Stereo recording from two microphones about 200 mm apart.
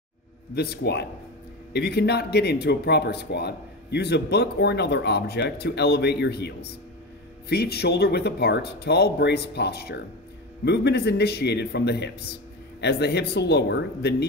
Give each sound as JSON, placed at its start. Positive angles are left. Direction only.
{"t": 0.6, "sound": "speech", "side_deg": 55}